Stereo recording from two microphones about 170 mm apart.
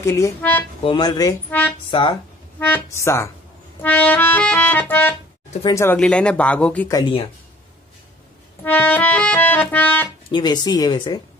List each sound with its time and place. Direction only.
0.0 s music: 15° left (ahead or behind)
0.8 s speech: 25° left (ahead or behind)
2.6 s music: 15° left (ahead or behind)
5.9 s music: 5° left (ahead or behind)
6.9 s speech: 25° left (ahead or behind)
8.6 s music: 10° left (ahead or behind)
10.3 s speech: 25° left (ahead or behind)